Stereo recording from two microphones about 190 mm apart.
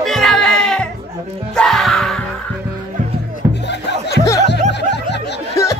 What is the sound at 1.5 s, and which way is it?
Music, centre (ahead or behind).